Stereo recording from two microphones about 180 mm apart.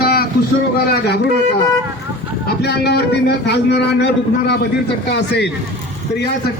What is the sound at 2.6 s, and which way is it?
A man's voice, 70° left (ahead or behind).